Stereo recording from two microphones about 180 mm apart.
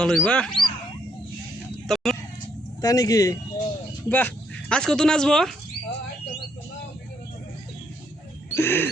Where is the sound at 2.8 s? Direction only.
20° left (ahead or behind); by 5.5 s 5° left (ahead or behind).